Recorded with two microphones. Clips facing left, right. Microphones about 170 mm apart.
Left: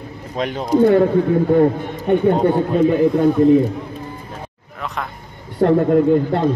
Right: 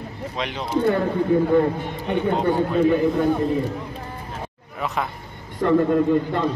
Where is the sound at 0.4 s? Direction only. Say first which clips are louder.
Left 8 dB; 45° left (ahead or behind).